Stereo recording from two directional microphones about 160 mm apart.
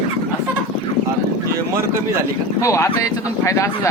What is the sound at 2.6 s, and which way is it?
Speech, 20° left (ahead or behind).